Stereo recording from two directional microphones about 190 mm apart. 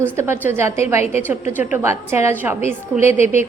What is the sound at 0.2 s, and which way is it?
A woman's voice, 15° right (ahead or behind).